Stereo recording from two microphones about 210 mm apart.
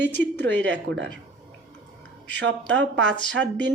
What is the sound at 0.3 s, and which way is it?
Speech, 55° right (ahead or behind).